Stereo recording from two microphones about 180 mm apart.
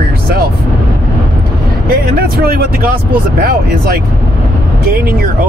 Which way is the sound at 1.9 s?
55° right (ahead or behind).